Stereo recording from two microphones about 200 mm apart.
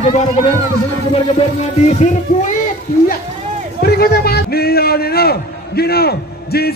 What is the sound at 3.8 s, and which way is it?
A man's voice, 50° left (ahead or behind).